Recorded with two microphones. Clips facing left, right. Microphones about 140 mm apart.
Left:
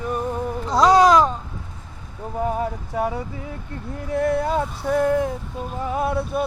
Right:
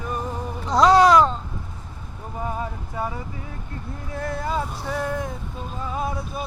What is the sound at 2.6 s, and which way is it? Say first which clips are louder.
Speech: left 5 dB; 65° left (ahead or behind).